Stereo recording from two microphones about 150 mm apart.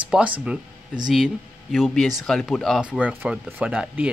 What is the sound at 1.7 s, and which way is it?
A man's voice, centre (ahead or behind).